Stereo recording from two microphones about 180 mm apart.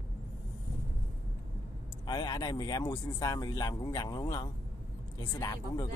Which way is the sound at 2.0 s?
25° left (ahead or behind).